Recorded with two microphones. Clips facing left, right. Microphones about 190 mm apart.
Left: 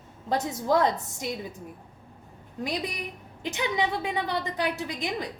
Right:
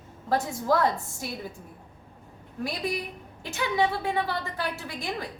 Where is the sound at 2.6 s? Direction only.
20° left (ahead or behind).